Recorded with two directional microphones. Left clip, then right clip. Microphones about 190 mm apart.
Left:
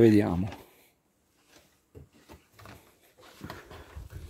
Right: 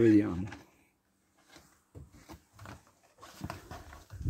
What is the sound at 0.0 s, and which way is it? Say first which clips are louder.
Speech: left 3 dB; 50° left (ahead or behind).